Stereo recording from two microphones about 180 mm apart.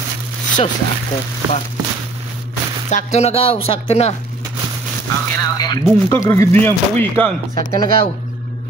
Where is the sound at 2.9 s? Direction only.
40° left (ahead or behind).